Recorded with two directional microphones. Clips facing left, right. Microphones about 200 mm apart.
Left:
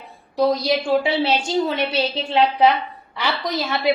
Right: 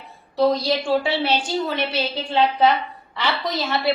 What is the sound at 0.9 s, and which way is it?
Speech, 20° left (ahead or behind).